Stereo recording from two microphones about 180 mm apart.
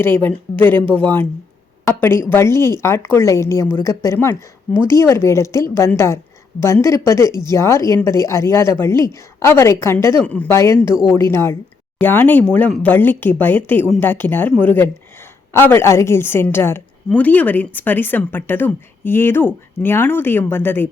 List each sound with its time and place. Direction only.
0.0 s a woman's voice: 10° left (ahead or behind)